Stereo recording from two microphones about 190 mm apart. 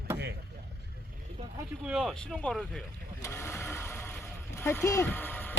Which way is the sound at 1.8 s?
Centre (ahead or behind).